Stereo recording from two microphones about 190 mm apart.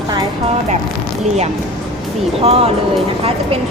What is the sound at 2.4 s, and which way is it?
A woman's voice, 30° right (ahead or behind).